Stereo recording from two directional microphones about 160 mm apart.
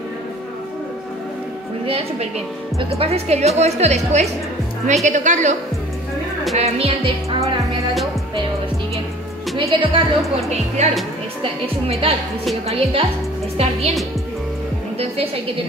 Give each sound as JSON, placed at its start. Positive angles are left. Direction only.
{"t": 1.9, "sound": "speech", "side_deg": -35}
{"t": 9.6, "sound": "speech", "side_deg": -30}
{"t": 10.8, "sound": "speech", "side_deg": -45}